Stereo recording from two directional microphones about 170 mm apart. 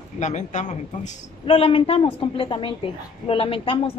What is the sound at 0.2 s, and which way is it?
Speech, 45° left (ahead or behind).